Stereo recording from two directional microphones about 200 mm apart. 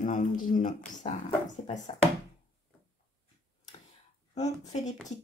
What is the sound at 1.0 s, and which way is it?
Speech, 30° left (ahead or behind).